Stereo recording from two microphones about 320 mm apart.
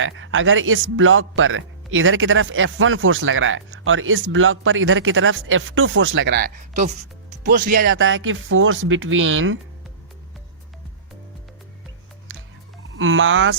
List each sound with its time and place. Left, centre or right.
0.0 s speech: right
7.9 s speech: right
12.3 s music: right
13.0 s speech: right